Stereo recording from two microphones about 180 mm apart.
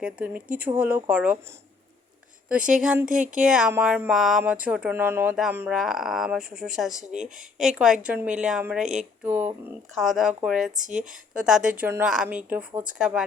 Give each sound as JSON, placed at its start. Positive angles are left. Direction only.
{"t": 0.0, "sound": "a woman's voice", "side_deg": -5}
{"t": 2.8, "sound": "a woman's voice", "side_deg": -10}
{"t": 3.1, "sound": "speech", "side_deg": -45}
{"t": 3.4, "sound": "a woman's voice", "side_deg": -5}
{"t": 9.9, "sound": "a woman's voice", "side_deg": 0}